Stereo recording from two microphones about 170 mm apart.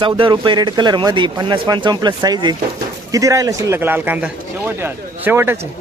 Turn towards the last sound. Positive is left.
turn(degrees=-15)  # may be behind; listen again after turning